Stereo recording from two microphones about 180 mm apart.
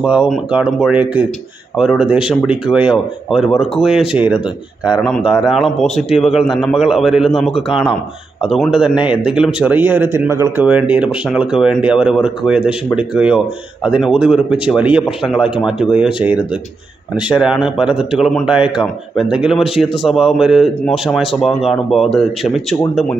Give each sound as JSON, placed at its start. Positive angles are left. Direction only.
{"t": 0.0, "sound": "speech", "side_deg": -5}
{"t": 8.5, "sound": "speech", "side_deg": -5}